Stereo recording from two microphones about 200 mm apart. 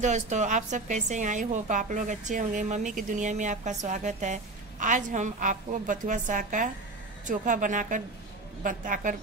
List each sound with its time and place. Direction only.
0.0 s a woman's voice: 35° right (ahead or behind)